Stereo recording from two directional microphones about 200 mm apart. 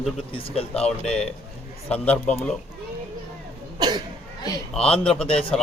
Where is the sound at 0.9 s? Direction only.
5° left (ahead or behind).